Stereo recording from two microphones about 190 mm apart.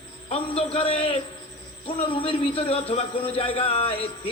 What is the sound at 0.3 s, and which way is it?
A man's voice, 30° left (ahead or behind).